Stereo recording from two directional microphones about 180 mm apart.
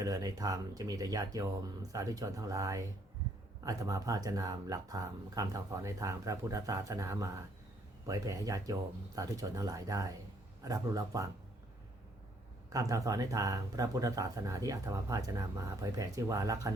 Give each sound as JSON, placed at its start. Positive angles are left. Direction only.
{"t": 0.0, "sound": "speech", "side_deg": -20}
{"t": 12.7, "sound": "speech", "side_deg": -20}